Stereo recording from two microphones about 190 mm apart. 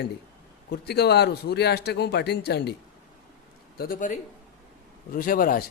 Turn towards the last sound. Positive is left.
turn(degrees=50)  # may be behind; listen again after turning